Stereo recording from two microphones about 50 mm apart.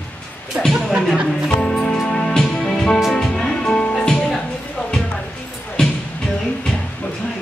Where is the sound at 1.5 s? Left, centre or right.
Centre.